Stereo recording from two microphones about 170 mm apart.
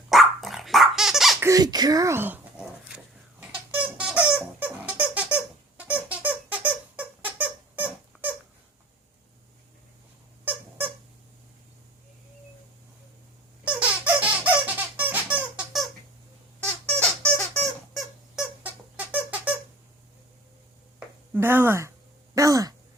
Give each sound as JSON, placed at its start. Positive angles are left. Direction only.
{"t": 0.1, "sound": "dog", "side_deg": 0}
{"t": 1.4, "sound": "a sound", "side_deg": -20}
{"t": 10.4, "sound": "squeak", "side_deg": -10}
{"t": 13.7, "sound": "squeak", "side_deg": -5}
{"t": 16.8, "sound": "music", "side_deg": 10}
{"t": 17.9, "sound": "squeak", "side_deg": -5}
{"t": 21.3, "sound": "a sound", "side_deg": -10}